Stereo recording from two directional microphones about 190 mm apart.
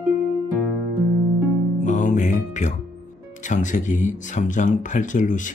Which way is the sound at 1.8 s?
40° left (ahead or behind).